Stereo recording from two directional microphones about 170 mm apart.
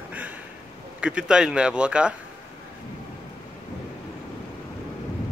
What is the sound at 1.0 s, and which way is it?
Speech, 5° right (ahead or behind).